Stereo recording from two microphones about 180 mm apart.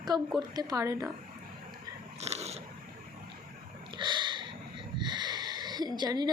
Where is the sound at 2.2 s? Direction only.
35° right (ahead or behind).